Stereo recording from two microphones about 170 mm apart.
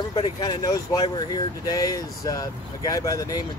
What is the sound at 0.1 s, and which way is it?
Speech, 30° left (ahead or behind).